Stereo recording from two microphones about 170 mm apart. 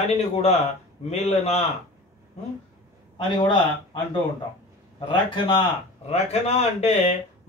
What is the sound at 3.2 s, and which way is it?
Speech, 30° left (ahead or behind).